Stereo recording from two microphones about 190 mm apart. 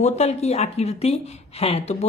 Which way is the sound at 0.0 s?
35° left (ahead or behind).